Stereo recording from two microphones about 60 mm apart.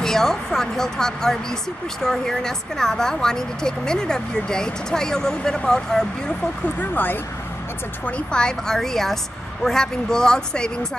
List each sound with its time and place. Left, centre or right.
0.0 s speech: centre
6.8 s speech: left
8.0 s speech: centre